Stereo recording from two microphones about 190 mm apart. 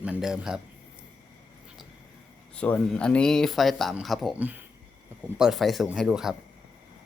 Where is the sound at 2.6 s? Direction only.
5° left (ahead or behind).